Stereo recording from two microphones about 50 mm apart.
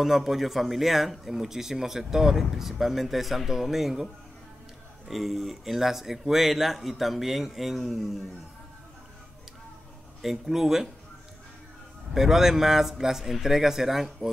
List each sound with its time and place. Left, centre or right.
0.0 s a man's voice: centre
10.2 s a man's voice: centre
12.1 s a man's voice: centre